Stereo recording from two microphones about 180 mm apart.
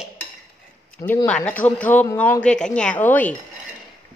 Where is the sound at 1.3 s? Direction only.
5° left (ahead or behind).